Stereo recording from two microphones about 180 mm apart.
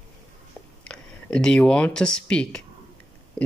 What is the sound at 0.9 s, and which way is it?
Speech, 5° left (ahead or behind).